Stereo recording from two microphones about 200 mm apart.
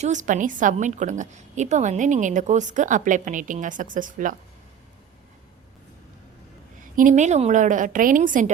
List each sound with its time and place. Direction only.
0.0 s a woman's voice: 40° right (ahead or behind)
6.9 s a woman's voice: 40° right (ahead or behind)